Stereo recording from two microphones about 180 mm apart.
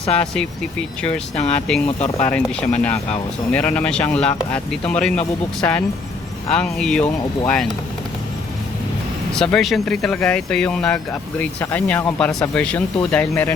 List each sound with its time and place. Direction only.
0.2 s speech: 5° left (ahead or behind)
9.3 s speech: 5° left (ahead or behind)